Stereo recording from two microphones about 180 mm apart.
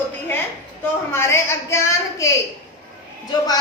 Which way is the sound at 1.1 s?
15° left (ahead or behind).